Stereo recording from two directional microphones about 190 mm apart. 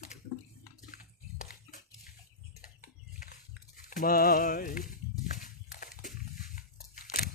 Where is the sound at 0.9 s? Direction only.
45° left (ahead or behind).